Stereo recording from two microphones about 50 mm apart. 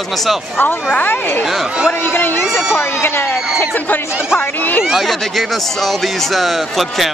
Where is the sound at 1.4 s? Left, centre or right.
Centre.